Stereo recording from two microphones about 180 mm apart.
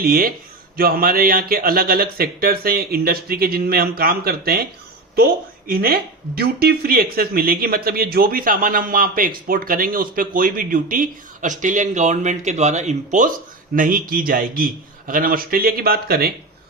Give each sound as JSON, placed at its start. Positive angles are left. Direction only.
{"t": 0.0, "sound": "a man's voice", "side_deg": -55}